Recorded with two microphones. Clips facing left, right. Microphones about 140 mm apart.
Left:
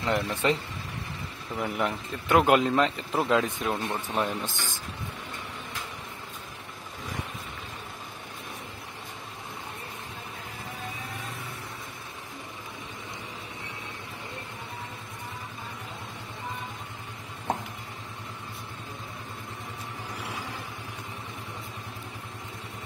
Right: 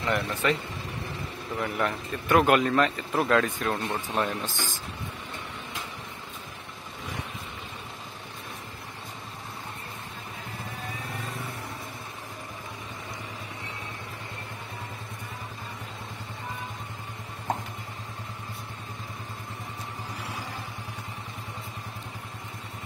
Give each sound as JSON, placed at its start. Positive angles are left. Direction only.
{"t": 0.0, "sound": "speech", "side_deg": 25}
{"t": 1.6, "sound": "speech", "side_deg": 15}